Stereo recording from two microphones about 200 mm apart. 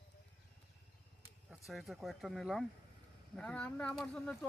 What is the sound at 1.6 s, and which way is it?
Speech, centre (ahead or behind).